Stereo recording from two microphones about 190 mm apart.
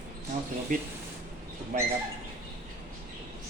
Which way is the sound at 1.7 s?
40° right (ahead or behind).